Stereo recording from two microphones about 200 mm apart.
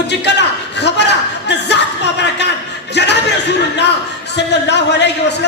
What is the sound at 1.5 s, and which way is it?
Music, 60° left (ahead or behind).